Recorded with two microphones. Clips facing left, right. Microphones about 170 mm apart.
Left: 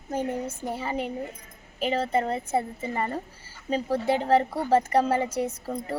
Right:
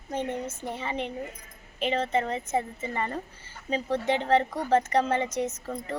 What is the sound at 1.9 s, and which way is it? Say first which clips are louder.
Speech: left 1 dB; 35° left (ahead or behind).